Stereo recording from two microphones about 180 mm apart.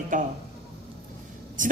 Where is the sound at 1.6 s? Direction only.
45° right (ahead or behind).